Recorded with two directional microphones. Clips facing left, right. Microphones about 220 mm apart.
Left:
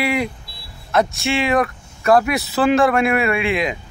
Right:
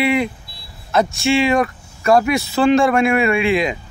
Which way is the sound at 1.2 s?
30° right (ahead or behind).